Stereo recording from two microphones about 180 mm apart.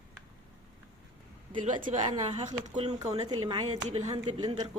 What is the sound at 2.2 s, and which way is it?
Speech, 35° right (ahead or behind).